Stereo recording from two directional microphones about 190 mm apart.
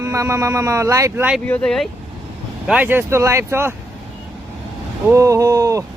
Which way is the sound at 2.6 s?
5° right (ahead or behind).